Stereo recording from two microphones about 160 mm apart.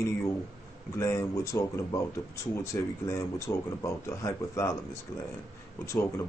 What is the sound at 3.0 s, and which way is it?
Speech, 15° left (ahead or behind).